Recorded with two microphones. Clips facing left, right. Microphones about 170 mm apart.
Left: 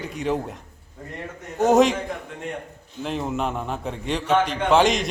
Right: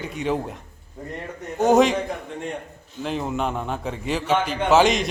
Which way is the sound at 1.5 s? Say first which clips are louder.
Even; centre (ahead or behind).